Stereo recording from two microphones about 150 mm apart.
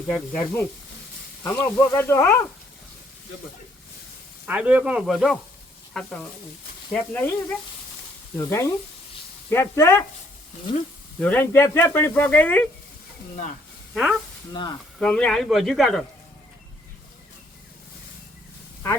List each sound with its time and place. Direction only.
0.1 s speech: 5° left (ahead or behind)
4.4 s speech: 10° right (ahead or behind); by 7.3 s 10° left (ahead or behind)
8.4 s speech: 20° left (ahead or behind)
11.2 s speech: 15° left (ahead or behind)
13.9 s speech: centre (ahead or behind)
14.5 s speech: 30° left (ahead or behind)
14.9 s speech: 5° left (ahead or behind)